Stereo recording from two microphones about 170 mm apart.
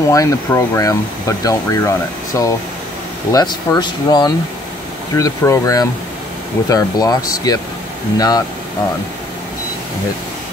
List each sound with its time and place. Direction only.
0.1 s speech: 20° left (ahead or behind)